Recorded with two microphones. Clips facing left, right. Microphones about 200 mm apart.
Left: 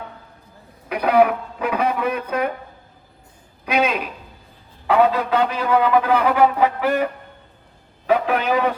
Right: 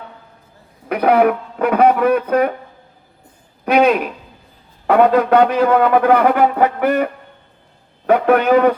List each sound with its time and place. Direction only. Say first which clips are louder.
0.9 s a man's voice: right 3 dB; 55° right (ahead or behind)
3.7 s a man's voice: right 7 dB; 55° right (ahead or behind)